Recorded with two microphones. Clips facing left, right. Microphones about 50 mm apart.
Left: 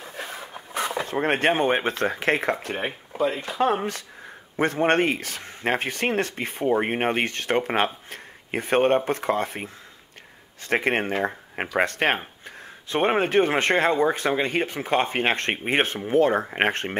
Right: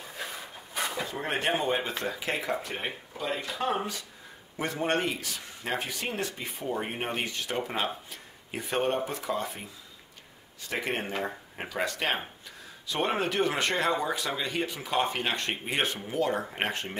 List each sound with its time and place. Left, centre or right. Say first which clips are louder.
0.9 s speech: left 10 dB; left
3.5 s speech: left 8 dB; left